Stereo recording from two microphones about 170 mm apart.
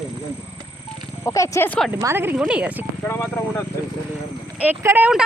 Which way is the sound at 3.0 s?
15° left (ahead or behind).